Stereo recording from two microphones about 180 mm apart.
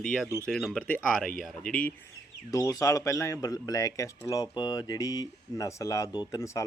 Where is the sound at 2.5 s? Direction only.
15° left (ahead or behind).